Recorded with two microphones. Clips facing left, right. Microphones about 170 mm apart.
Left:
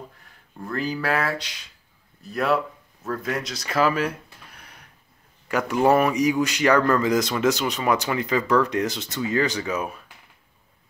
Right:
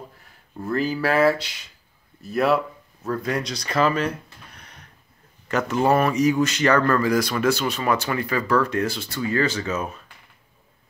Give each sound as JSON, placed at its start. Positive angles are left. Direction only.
{"t": 0.7, "sound": "speech", "side_deg": -5}
{"t": 4.6, "sound": "a sound", "side_deg": 10}
{"t": 5.5, "sound": "speech", "side_deg": 10}